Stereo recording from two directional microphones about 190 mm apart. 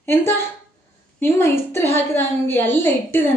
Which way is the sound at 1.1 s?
15° left (ahead or behind).